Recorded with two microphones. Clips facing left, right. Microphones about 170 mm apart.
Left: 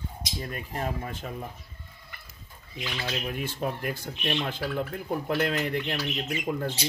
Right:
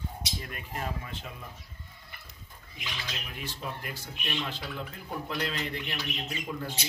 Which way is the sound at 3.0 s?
55° left (ahead or behind).